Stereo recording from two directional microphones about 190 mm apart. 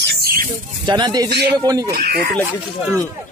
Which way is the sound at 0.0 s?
55° right (ahead or behind).